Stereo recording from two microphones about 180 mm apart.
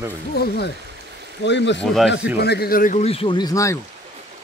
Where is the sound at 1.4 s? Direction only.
80° left.